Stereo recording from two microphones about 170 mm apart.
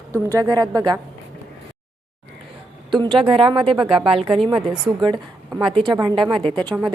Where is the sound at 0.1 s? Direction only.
20° right (ahead or behind).